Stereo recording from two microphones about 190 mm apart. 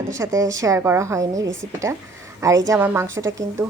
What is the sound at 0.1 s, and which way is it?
Speech, 15° right (ahead or behind).